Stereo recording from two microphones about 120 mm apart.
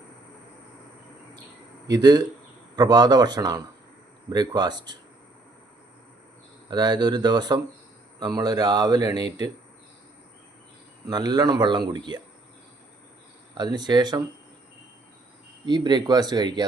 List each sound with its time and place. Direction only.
1.9 s speech: 35° right (ahead or behind)
6.7 s speech: 35° right (ahead or behind)
11.0 s speech: 35° right (ahead or behind)
13.6 s speech: 35° right (ahead or behind)
15.6 s speech: 35° right (ahead or behind)